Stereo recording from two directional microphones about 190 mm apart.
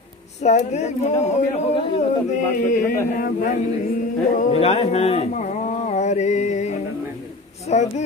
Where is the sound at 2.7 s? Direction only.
50° left (ahead or behind).